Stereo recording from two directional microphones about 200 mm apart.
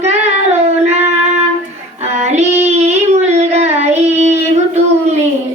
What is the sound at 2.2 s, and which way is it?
Child singing, 35° right (ahead or behind).